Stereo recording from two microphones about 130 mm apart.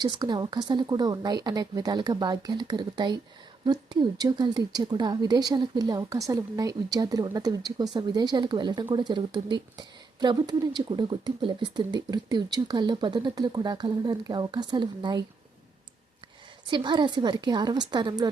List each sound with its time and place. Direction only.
0.0 s a woman's voice: 35° right (ahead or behind)
16.6 s a woman's voice: 35° right (ahead or behind)